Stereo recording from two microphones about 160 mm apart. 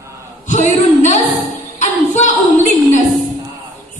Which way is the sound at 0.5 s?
50° left (ahead or behind).